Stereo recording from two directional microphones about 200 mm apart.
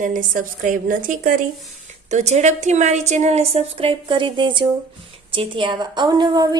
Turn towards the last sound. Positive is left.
turn(degrees=-20)  # may be behind; listen again after turning